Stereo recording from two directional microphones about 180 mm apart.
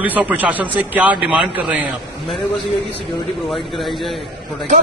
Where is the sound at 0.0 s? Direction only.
10° right (ahead or behind).